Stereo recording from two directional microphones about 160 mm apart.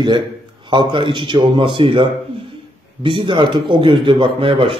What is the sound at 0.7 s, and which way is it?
A man's voice, 30° right (ahead or behind).